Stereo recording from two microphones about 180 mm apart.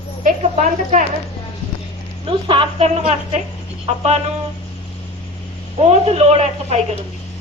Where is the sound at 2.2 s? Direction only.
30° right (ahead or behind).